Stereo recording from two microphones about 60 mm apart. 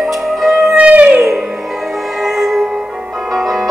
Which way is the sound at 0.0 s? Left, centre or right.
Centre.